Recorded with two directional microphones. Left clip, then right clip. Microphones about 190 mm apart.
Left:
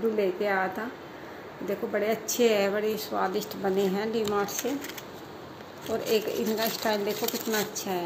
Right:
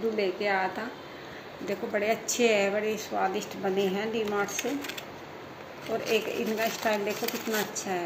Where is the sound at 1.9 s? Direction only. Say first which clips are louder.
Right 1 dB; 25° left (ahead or behind).